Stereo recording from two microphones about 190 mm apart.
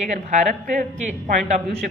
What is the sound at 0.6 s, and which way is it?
Speech, 40° right (ahead or behind).